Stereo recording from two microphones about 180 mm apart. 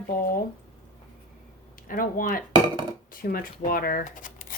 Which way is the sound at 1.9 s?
50° left (ahead or behind).